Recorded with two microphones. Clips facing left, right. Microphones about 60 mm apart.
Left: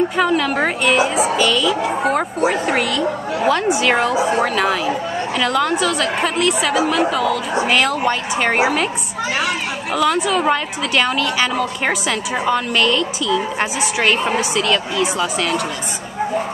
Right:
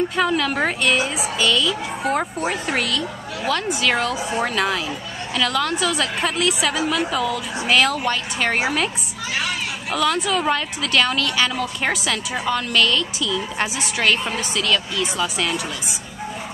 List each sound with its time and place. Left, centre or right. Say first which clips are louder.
0.2 s a woman's voice: left 2 dB; centre
4.4 s a woman's voice: left 4 dB; centre
5.4 s a woman's voice: left 3 dB; centre
5.8 s a woman's voice: left 4 dB; centre
8.0 s a woman's voice: left 4 dB; centre
9.9 s a woman's voice: left 3 dB; centre
14.0 s a woman's voice: left 3 dB; left